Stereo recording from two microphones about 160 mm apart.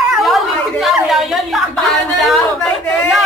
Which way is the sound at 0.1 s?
Centre (ahead or behind).